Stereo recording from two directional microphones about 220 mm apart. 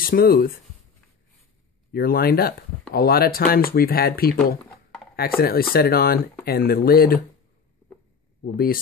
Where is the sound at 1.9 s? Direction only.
45° left (ahead or behind).